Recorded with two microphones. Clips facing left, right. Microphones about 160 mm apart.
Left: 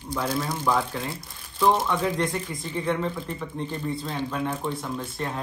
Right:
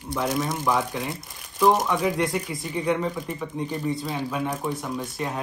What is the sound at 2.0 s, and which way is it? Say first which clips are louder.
Speech: right 2 dB; 10° right (ahead or behind).